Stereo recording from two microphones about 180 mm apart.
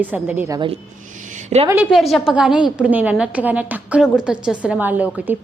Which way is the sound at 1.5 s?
40° right (ahead or behind).